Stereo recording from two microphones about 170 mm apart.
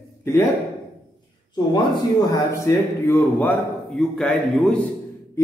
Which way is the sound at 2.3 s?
15° left (ahead or behind).